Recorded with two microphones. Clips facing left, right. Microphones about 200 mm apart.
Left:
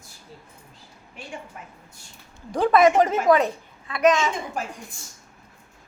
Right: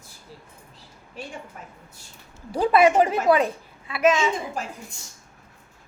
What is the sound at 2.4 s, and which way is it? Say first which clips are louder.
A woman's voice: even; 10° right (ahead or behind).